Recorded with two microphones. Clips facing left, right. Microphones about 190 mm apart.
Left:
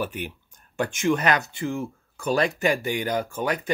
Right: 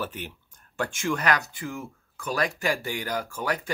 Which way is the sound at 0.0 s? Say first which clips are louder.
Left 4 dB; 15° left (ahead or behind).